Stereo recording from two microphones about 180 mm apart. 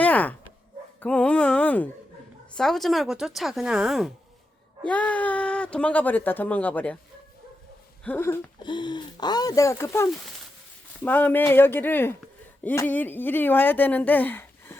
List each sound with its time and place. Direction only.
0.0 s dog: 10° left (ahead or behind)
1.0 s a woman's voice: 5° left (ahead or behind)
4.9 s speech: 5° left (ahead or behind)
8.0 s speech: 10° left (ahead or behind)
8.5 s speech: 25° left (ahead or behind)